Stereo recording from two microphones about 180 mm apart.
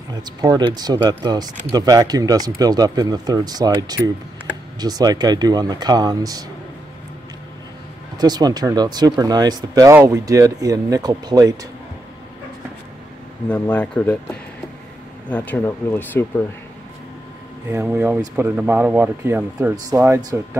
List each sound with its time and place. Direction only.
0.1 s speech: 20° right (ahead or behind)
8.2 s speech: 20° right (ahead or behind)
13.5 s speech: 5° left (ahead or behind)
15.2 s speech: 10° left (ahead or behind)
17.6 s speech: 15° right (ahead or behind)